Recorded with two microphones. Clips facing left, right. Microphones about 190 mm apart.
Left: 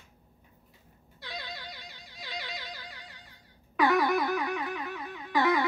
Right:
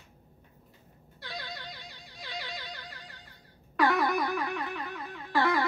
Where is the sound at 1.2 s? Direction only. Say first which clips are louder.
Even; centre (ahead or behind).